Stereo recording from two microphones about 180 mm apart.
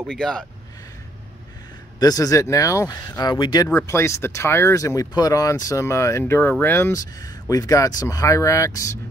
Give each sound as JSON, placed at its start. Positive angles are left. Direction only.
{"t": 0.0, "sound": "speech", "side_deg": 0}
{"t": 2.0, "sound": "speech", "side_deg": 20}
{"t": 3.6, "sound": "speech", "side_deg": 15}